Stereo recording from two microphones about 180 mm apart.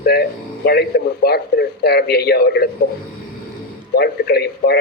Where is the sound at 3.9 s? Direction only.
60° left (ahead or behind).